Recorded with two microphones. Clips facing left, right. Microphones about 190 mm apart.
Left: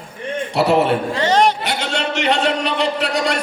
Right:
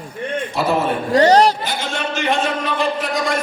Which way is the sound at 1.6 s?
70° left (ahead or behind).